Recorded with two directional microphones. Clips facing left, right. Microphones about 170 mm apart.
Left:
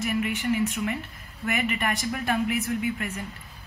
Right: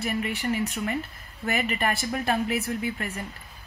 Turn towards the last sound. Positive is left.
turn(degrees=-35)  # may be behind; listen again after turning